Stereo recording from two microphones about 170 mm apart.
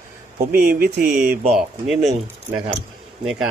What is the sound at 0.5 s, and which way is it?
Speech, 60° right (ahead or behind).